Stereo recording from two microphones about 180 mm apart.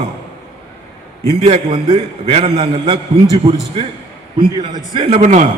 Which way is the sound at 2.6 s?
25° right (ahead or behind).